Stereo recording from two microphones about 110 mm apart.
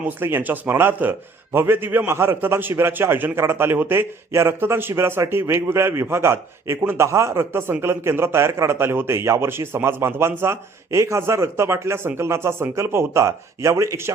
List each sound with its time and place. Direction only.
0.2 s a man's voice: 20° right (ahead or behind)